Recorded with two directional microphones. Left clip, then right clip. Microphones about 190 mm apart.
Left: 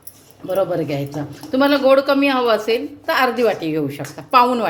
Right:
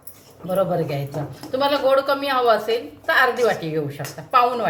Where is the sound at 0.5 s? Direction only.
40° left (ahead or behind).